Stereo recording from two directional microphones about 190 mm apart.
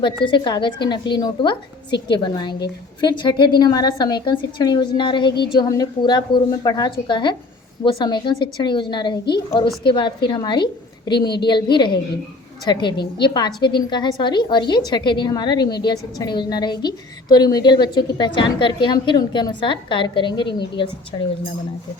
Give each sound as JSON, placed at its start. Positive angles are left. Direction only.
{"t": 0.3, "sound": "a woman's voice", "side_deg": 25}